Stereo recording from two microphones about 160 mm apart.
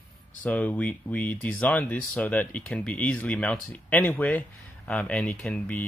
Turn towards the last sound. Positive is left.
turn(degrees=10)  # may be behind; listen again after turning